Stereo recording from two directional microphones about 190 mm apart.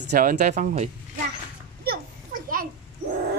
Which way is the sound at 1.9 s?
50° right (ahead or behind).